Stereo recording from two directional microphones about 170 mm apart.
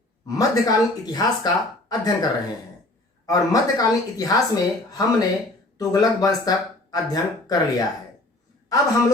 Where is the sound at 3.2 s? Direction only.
20° left (ahead or behind).